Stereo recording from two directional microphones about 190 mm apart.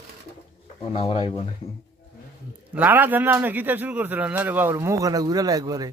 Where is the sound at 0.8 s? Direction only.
30° left (ahead or behind).